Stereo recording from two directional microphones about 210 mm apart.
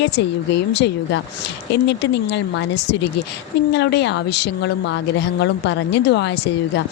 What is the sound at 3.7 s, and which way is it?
A woman's voice, 55° left (ahead or behind).